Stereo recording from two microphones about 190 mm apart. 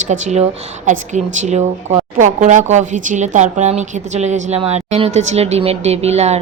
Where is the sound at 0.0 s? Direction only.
40° right (ahead or behind).